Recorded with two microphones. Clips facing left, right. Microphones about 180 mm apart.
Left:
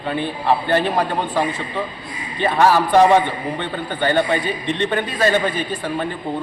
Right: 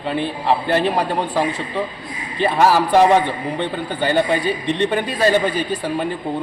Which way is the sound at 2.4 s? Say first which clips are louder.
Even; 5° right (ahead or behind).